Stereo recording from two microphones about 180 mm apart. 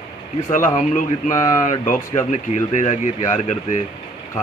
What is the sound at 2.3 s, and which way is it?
Speech, 40° left (ahead or behind).